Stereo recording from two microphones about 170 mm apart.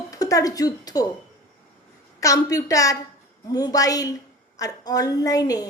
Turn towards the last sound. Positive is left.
turn(degrees=20)  # may be behind; listen again after turning